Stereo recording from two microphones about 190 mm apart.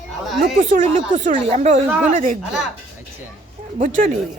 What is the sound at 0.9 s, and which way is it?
A woman's voice, 40° right (ahead or behind).